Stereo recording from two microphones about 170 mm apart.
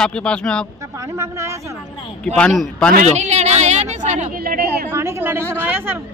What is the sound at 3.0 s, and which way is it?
Speech, 40° right (ahead or behind).